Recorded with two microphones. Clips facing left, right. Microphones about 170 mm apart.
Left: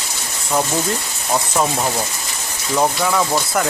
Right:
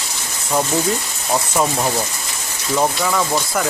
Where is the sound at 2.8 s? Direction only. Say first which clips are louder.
Left 1 dB; centre (ahead or behind).